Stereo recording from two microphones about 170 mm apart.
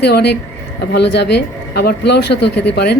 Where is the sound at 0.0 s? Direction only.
75° left (ahead or behind).